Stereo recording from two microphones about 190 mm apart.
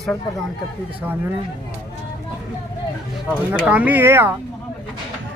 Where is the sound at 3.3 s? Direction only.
5° right (ahead or behind).